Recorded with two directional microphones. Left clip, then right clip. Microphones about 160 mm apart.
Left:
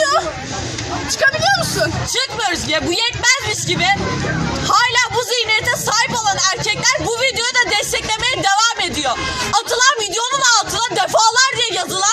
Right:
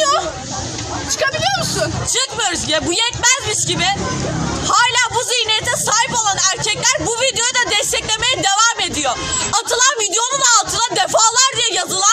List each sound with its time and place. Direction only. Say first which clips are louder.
1.2 s vehicle: left 3 dB; 20° right (ahead or behind)
2.1 s speech: right 1 dB; centre (ahead or behind)
4.6 s music: even; centre (ahead or behind)